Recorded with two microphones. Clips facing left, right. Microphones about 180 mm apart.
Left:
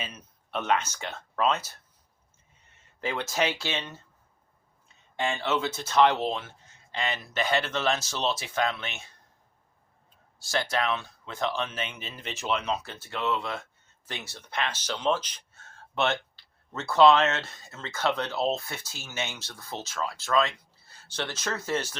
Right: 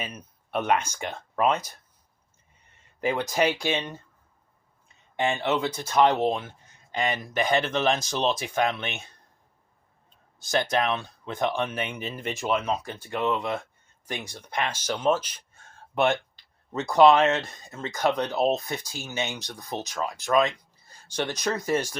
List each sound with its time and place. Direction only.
0.0 s speech: 10° right (ahead or behind)
3.0 s speech: 15° right (ahead or behind)
5.1 s speech: 20° right (ahead or behind)
10.4 s speech: 20° right (ahead or behind)